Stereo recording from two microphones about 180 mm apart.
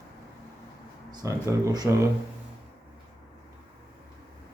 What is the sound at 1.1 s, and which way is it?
Speech, 15° right (ahead or behind).